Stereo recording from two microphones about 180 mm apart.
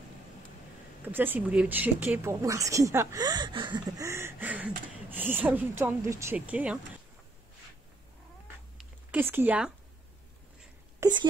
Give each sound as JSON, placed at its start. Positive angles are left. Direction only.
{"t": 1.0, "sound": "speech", "side_deg": -10}
{"t": 8.7, "sound": "a sound", "side_deg": -10}
{"t": 11.0, "sound": "speech", "side_deg": -20}